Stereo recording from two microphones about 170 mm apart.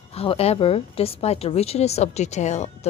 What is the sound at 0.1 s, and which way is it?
A woman's voice, 35° left (ahead or behind).